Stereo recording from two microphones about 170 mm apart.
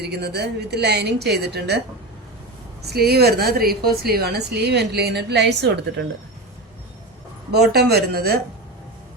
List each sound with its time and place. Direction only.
0.0 s a woman's voice: 70° right (ahead or behind)
2.8 s a woman's voice: 65° right (ahead or behind); by 6.1 s 85° right
7.5 s a woman's voice: 70° right (ahead or behind)